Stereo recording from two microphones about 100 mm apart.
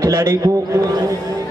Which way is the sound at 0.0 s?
30° right (ahead or behind).